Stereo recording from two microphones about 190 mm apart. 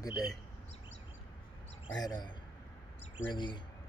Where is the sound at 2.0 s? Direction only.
20° left (ahead or behind).